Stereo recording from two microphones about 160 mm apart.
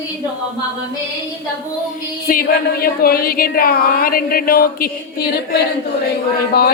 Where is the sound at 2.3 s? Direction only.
70° left (ahead or behind).